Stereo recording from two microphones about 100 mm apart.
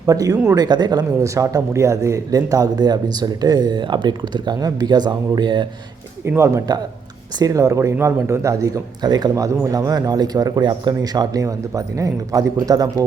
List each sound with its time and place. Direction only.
0.0 s a man's voice: 35° right (ahead or behind)
6.2 s speech: 25° right (ahead or behind); by 9.3 s 45° right (ahead or behind)
9.3 s speech: 30° right (ahead or behind)